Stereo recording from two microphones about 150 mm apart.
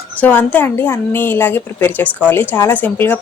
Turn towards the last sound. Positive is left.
turn(degrees=10)  # may be behind; listen again after turning